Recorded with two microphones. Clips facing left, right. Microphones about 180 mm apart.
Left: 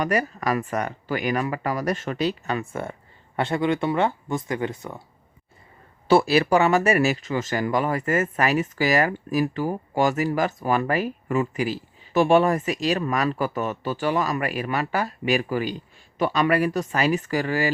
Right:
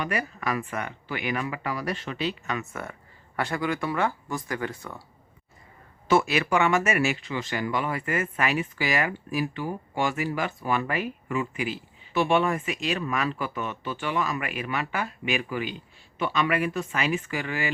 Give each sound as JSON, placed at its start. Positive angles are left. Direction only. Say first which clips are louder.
{"t": 0.0, "sound": "speech", "louder": "left 6 dB", "side_deg": 40}
{"t": 6.1, "sound": "speech", "louder": "left 5 dB", "side_deg": 35}